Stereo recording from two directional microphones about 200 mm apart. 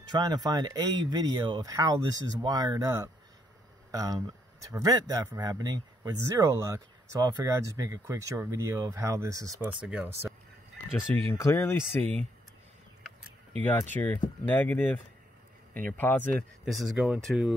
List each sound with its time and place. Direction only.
0.1 s speech: 20° right (ahead or behind)
11.3 s speech: 15° left (ahead or behind)
13.6 s speech: 5° left (ahead or behind)
16.0 s speech: 10° left (ahead or behind)